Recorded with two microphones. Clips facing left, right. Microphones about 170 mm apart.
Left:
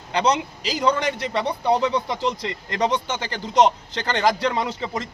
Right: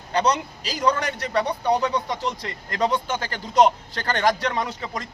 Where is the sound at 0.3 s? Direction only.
20° left (ahead or behind).